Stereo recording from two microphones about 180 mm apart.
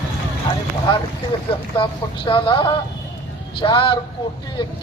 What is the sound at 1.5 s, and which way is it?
A man's voice, 30° left (ahead or behind).